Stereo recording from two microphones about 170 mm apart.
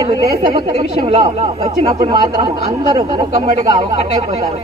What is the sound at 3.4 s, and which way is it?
Speech, 35° right (ahead or behind).